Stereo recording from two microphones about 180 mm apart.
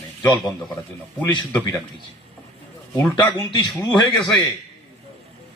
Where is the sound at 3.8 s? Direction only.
20° left (ahead or behind).